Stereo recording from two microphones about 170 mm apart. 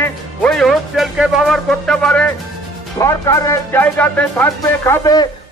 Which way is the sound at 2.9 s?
20° left (ahead or behind).